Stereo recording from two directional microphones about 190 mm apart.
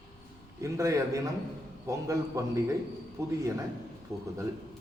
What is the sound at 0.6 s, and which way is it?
A man's voice, 15° right (ahead or behind).